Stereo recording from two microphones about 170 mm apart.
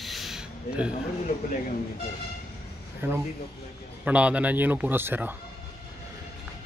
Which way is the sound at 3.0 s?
15° right (ahead or behind).